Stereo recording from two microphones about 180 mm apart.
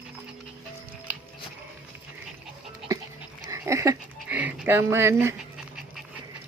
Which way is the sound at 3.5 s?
15° right (ahead or behind).